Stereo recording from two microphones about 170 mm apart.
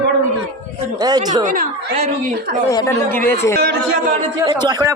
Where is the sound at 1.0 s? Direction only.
25° right (ahead or behind).